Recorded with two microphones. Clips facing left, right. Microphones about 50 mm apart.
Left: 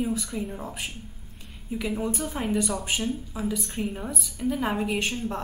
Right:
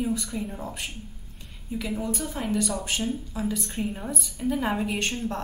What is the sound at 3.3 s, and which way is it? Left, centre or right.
A woman's voice, centre.